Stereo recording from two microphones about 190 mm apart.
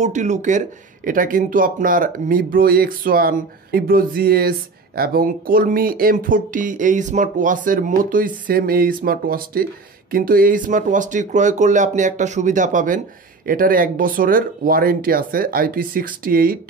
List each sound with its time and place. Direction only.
0.0 s speech: 40° right (ahead or behind)